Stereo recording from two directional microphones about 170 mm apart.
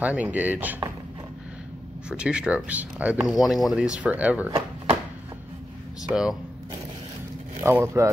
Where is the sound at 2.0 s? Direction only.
5° right (ahead or behind).